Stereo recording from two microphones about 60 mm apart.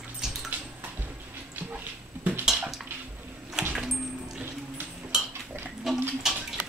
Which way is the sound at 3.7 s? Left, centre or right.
Centre.